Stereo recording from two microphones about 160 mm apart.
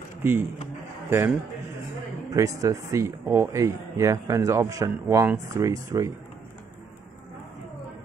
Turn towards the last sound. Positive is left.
turn(degrees=-20)  # may be behind; listen again after turning